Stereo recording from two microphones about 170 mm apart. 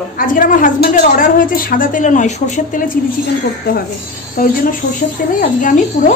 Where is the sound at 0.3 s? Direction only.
50° left (ahead or behind).